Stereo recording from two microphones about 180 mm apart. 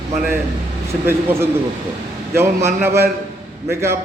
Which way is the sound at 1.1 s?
15° right (ahead or behind).